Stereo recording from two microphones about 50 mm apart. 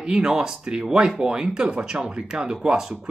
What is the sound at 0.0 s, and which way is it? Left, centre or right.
Speech, centre.